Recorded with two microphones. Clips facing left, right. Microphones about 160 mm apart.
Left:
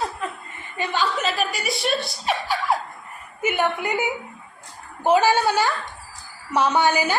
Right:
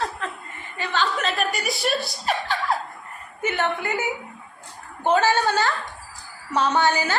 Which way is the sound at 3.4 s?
10° left (ahead or behind).